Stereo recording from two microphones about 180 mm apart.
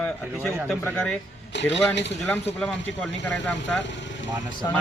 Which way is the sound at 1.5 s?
80° left.